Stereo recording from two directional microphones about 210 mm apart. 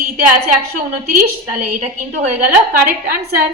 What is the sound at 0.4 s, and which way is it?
A woman's voice, 45° right (ahead or behind).